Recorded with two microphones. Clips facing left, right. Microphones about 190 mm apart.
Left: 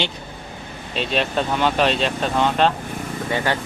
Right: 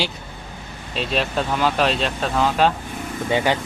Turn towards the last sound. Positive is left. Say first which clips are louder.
# right 3 dB
turn(degrees=-15)  # may be behind; listen again after turning